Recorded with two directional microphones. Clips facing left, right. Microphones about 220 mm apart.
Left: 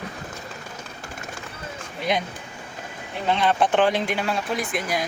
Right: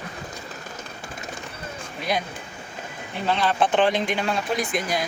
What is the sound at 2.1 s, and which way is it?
Speech, 20° left (ahead or behind).